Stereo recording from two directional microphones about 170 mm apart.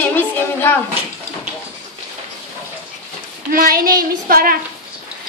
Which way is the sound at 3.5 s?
55° right (ahead or behind).